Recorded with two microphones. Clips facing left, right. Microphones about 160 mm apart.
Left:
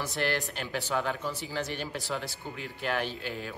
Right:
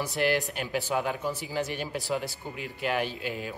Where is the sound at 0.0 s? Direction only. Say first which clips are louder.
Right 4 dB; centre (ahead or behind).